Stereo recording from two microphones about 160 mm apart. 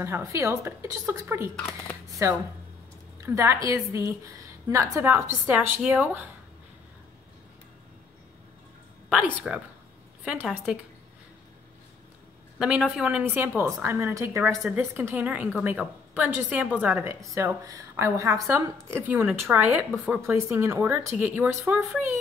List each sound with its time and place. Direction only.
0.0 s a woman's voice: 20° right (ahead or behind)
9.1 s a woman's voice: 10° right (ahead or behind)
12.5 s a woman's voice: 5° right (ahead or behind)